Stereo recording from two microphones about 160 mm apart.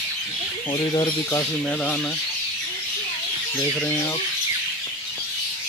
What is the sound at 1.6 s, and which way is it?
Speech, 5° left (ahead or behind).